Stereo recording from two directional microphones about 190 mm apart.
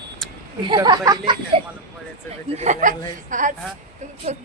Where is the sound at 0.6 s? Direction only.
25° right (ahead or behind).